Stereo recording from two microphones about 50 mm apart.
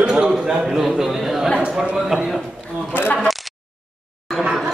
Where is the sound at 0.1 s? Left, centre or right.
Centre.